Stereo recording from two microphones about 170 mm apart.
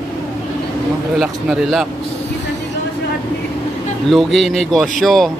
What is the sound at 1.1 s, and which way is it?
Speech, 5° right (ahead or behind).